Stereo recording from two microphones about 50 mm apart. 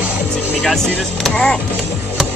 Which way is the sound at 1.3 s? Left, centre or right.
Centre.